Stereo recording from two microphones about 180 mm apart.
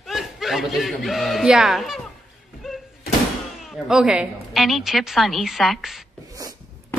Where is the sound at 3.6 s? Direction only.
Centre (ahead or behind).